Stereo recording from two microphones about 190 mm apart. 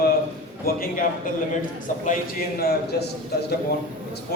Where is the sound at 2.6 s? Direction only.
55° left (ahead or behind).